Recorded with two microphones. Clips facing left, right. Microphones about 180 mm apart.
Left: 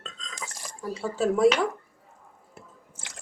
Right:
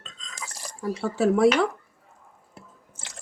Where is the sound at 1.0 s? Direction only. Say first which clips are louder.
Right 3 dB; 70° right (ahead or behind).